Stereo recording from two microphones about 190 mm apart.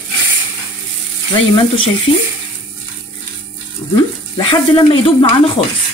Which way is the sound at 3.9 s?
25° left (ahead or behind).